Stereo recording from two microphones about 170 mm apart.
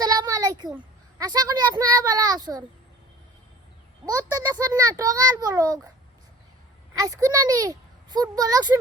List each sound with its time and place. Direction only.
0.0 s a sound: 25° right (ahead or behind)
1.2 s a child's voice: 20° right (ahead or behind)
4.0 s a child's voice: 15° right (ahead or behind)
6.9 s speech: 20° right (ahead or behind)